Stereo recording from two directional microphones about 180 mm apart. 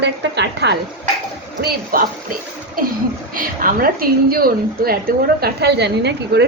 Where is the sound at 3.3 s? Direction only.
50° right (ahead or behind); by 6.4 s 70° right (ahead or behind).